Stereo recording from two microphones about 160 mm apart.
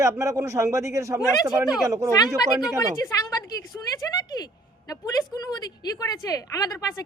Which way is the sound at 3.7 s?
20° left (ahead or behind).